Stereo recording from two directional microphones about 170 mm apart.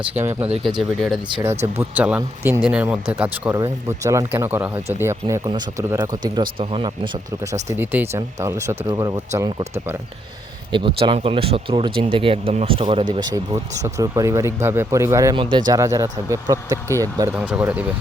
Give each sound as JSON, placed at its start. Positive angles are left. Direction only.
{"t": 0.0, "sound": "speech", "side_deg": -10}
{"t": 0.6, "sound": "speech", "side_deg": 0}
{"t": 1.4, "sound": "speech", "side_deg": -15}
{"t": 5.5, "sound": "speech", "side_deg": -20}
{"t": 6.6, "sound": "speech", "side_deg": -30}
{"t": 7.7, "sound": "speech", "side_deg": -15}
{"t": 10.7, "sound": "speech", "side_deg": -30}
{"t": 17.4, "sound": "speech", "side_deg": -10}